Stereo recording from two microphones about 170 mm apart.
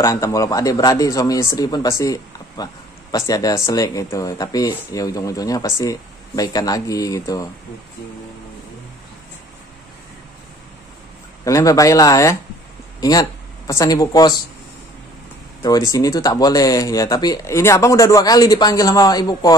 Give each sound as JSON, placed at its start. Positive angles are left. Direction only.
{"t": 0.0, "sound": "speech", "side_deg": 20}
{"t": 11.4, "sound": "speech", "side_deg": 20}
{"t": 15.9, "sound": "speech", "side_deg": 20}